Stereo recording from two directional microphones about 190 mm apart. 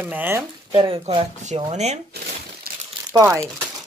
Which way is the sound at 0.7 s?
30° right (ahead or behind).